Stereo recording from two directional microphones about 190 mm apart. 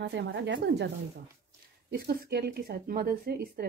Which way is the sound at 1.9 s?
55° right (ahead or behind).